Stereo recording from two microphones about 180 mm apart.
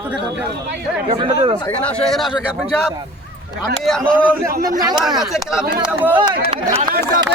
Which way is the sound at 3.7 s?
5° left (ahead or behind).